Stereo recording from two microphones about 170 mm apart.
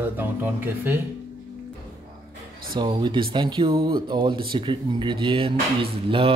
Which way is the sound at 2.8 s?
25° right (ahead or behind).